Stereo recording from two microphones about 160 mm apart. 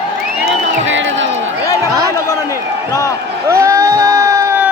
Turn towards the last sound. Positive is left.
turn(degrees=-20)  # may be behind; listen again after turning